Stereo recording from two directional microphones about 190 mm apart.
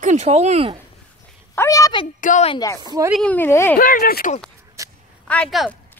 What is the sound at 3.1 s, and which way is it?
Speech, 5° left (ahead or behind).